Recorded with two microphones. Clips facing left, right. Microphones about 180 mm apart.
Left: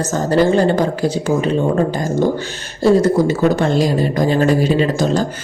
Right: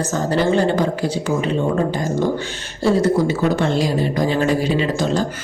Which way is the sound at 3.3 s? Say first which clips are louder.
Left 3 dB; 45° left (ahead or behind).